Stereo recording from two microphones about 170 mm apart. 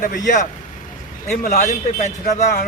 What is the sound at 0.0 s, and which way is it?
Speech, 50° left (ahead or behind).